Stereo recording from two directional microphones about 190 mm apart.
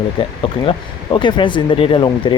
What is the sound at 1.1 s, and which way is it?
Speech, 25° left (ahead or behind).